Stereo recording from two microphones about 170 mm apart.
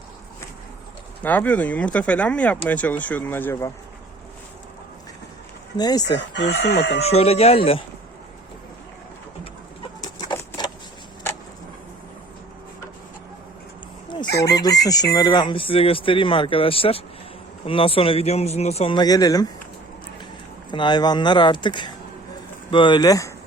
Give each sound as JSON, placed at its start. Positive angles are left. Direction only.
{"t": 1.2, "sound": "speech", "side_deg": 10}
{"t": 5.7, "sound": "speech", "side_deg": 25}
{"t": 6.1, "sound": "speech", "side_deg": 90}
{"t": 7.0, "sound": "speech", "side_deg": 35}
{"t": 10.0, "sound": "bird", "side_deg": 25}
{"t": 14.3, "sound": "chicken", "side_deg": 80}
{"t": 14.5, "sound": "speech", "side_deg": 20}
{"t": 20.7, "sound": "speech", "side_deg": 25}